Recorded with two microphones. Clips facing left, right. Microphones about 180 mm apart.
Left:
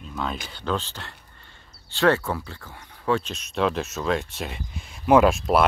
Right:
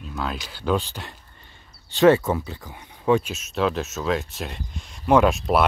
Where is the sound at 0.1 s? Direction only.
Centre (ahead or behind).